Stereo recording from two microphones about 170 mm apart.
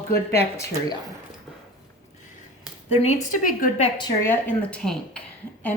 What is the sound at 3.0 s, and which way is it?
Speech, 50° left (ahead or behind).